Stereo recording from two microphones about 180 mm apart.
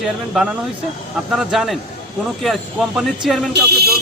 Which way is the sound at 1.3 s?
Centre (ahead or behind).